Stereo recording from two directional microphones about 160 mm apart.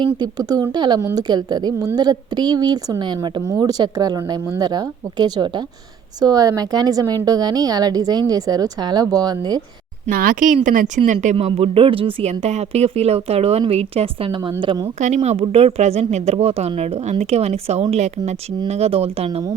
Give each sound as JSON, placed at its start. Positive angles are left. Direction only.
{"t": 0.0, "sound": "a woman's voice", "side_deg": -25}
{"t": 10.1, "sound": "a woman's voice", "side_deg": -60}
{"t": 14.9, "sound": "a woman's voice", "side_deg": -45}